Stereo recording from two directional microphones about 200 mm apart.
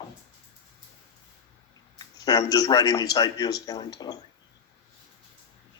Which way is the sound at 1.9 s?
20° left (ahead or behind).